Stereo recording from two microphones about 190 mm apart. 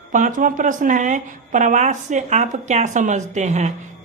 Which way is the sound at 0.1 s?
45° right (ahead or behind).